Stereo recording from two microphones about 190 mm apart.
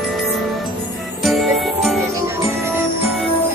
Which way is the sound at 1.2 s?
Centre (ahead or behind).